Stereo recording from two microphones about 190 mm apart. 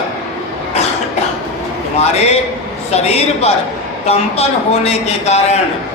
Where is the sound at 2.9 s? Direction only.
35° left (ahead or behind).